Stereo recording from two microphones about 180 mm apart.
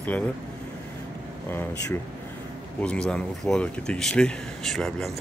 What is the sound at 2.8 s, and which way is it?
Speech, 5° left (ahead or behind).